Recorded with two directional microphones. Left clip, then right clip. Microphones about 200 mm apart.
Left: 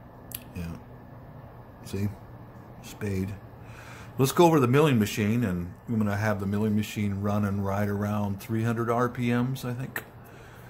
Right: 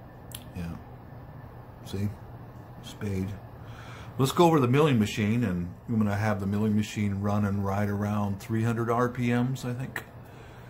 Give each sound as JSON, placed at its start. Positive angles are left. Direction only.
{"t": 1.9, "sound": "speech", "side_deg": 25}